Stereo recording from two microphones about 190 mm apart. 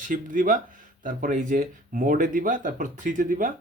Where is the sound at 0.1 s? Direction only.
45° right (ahead or behind).